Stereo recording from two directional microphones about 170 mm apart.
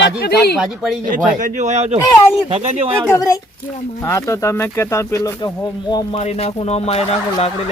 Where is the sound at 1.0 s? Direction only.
50° right (ahead or behind).